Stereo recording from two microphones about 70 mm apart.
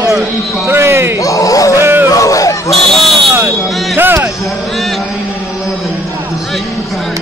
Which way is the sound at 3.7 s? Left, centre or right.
Centre.